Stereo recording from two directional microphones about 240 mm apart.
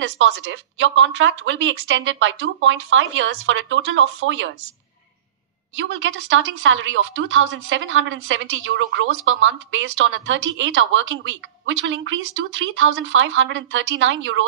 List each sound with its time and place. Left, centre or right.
0.0 s speech: right
5.8 s speech: right